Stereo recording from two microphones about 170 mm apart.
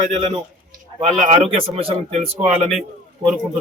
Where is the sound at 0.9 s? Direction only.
35° right (ahead or behind).